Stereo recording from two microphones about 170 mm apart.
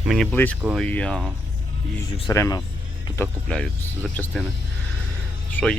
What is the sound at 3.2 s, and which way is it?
Speech, 5° left (ahead or behind).